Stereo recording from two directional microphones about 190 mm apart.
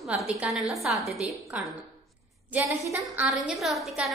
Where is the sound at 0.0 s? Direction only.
5° right (ahead or behind).